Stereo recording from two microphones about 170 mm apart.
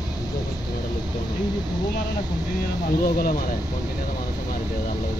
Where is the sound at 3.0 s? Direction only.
65° left (ahead or behind).